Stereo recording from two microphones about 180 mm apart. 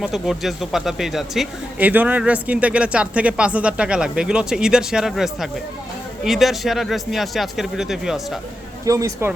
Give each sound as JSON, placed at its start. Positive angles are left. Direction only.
{"t": 0.0, "sound": "speech", "side_deg": 0}
{"t": 8.8, "sound": "speech", "side_deg": -20}